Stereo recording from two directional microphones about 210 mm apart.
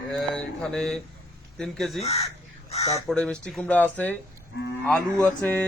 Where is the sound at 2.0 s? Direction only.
30° left (ahead or behind).